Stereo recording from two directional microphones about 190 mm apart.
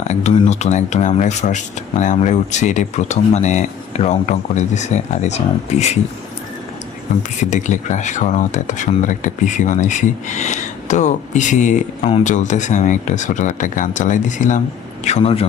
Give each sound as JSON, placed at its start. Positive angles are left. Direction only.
{"t": 0.1, "sound": "speech", "side_deg": 35}
{"t": 7.2, "sound": "speech", "side_deg": 40}